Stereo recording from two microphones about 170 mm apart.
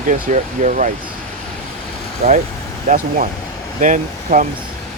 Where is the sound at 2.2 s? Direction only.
45° right (ahead or behind).